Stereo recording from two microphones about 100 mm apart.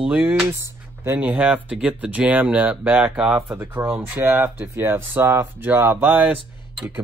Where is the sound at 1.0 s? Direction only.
20° right (ahead or behind).